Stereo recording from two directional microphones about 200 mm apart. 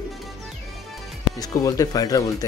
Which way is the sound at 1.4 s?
15° left (ahead or behind).